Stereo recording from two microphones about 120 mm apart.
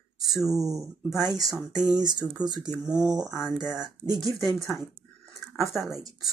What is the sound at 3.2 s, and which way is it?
Speech, 5° right (ahead or behind).